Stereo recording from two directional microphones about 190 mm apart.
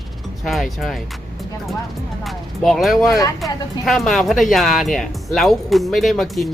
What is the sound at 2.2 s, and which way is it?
Speech, centre (ahead or behind).